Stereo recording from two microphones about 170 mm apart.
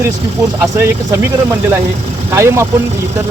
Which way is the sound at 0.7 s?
15° right (ahead or behind).